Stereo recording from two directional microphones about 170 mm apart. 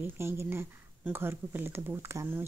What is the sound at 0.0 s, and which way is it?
Speech, 15° right (ahead or behind).